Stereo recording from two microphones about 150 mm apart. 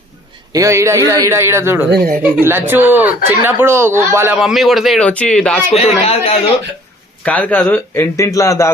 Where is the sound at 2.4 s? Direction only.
15° right (ahead or behind).